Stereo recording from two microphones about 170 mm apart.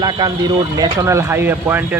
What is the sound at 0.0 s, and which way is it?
Speech, 25° right (ahead or behind).